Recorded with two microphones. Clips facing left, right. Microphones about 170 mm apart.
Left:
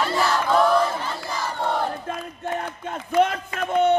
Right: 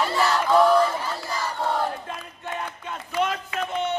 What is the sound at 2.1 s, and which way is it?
Speech, 45° left (ahead or behind).